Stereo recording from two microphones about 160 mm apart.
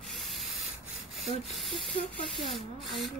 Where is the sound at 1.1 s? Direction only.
Centre (ahead or behind).